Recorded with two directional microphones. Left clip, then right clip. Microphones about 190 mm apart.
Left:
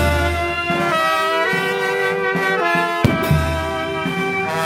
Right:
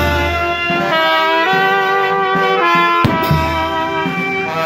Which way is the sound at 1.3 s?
35° right (ahead or behind).